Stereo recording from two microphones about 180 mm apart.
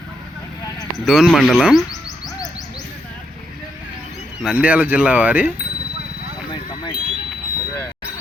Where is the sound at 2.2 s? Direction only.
20° left (ahead or behind).